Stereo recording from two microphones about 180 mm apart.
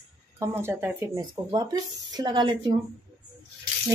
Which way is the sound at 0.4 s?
15° right (ahead or behind).